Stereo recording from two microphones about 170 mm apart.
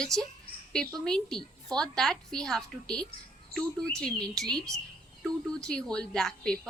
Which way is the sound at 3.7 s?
5° left (ahead or behind).